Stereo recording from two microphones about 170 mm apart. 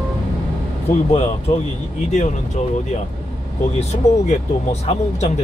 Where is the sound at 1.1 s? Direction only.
35° left (ahead or behind).